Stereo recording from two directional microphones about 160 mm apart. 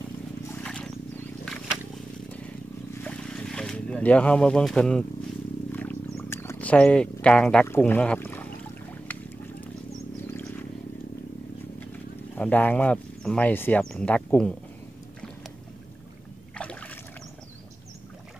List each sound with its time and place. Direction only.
0.7 s wild animals: 5° left (ahead or behind)
2.3 s a sound: 10° left (ahead or behind)
7.6 s speech: 15° left (ahead or behind)
9.0 s boat: 10° left (ahead or behind)
10.3 s vehicle: 15° left (ahead or behind)
11.9 s speech: 10° left (ahead or behind)
16.5 s rowboat: 10° left (ahead or behind)